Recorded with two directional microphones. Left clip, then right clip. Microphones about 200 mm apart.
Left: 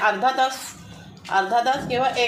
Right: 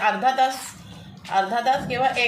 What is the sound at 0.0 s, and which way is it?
A woman's voice, 25° left (ahead or behind).